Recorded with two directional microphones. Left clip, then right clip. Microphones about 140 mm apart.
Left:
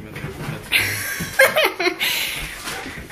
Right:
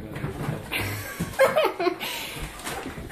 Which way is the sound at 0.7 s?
5° right (ahead or behind).